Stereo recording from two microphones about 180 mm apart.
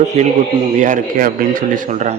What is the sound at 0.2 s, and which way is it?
A man's voice, 40° right (ahead or behind).